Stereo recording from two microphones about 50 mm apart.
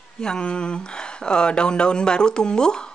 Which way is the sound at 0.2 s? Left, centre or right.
Centre.